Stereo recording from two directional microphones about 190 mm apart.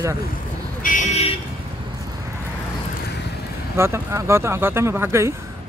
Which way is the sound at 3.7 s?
15° right (ahead or behind).